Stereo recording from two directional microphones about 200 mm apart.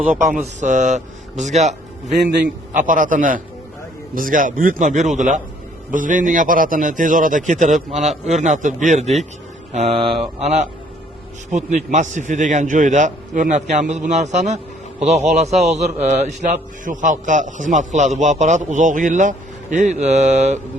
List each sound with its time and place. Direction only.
0.1 s a man's voice: 40° right (ahead or behind)
9.7 s mantra: 30° right (ahead or behind)
10.4 s a man's voice: 35° right (ahead or behind)